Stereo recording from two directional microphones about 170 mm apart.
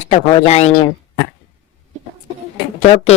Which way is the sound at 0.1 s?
40° left (ahead or behind).